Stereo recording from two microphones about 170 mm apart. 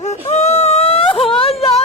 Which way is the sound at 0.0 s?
40° left (ahead or behind).